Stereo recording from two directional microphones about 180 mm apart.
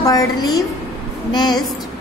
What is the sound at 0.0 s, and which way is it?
A woman's voice, 20° left (ahead or behind).